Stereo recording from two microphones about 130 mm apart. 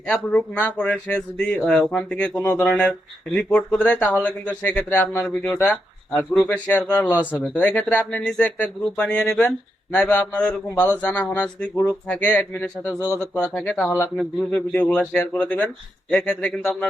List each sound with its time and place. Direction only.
0.1 s speech: 10° left (ahead or behind)